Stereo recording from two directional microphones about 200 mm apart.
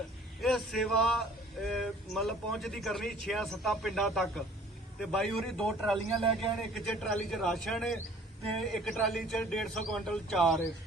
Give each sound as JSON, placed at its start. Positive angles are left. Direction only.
{"t": 0.4, "sound": "speech", "side_deg": 0}